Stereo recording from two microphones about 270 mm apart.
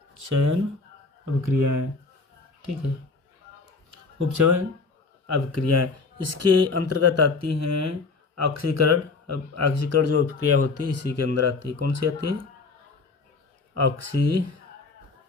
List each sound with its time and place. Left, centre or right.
0.1 s speech: right
3.9 s speech: right
5.2 s speech: right
13.7 s speech: right